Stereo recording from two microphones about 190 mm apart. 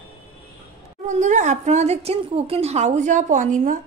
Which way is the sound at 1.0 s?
40° right (ahead or behind).